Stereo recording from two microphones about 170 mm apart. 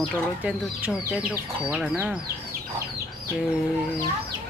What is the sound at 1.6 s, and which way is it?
Speech, 5° right (ahead or behind).